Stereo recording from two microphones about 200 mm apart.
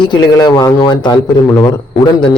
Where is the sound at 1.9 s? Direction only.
25° left (ahead or behind).